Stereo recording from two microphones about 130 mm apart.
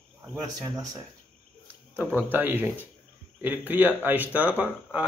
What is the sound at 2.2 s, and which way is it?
Speech, 15° right (ahead or behind).